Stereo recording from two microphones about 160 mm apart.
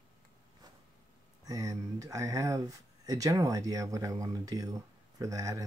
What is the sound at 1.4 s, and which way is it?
Speech, 20° right (ahead or behind).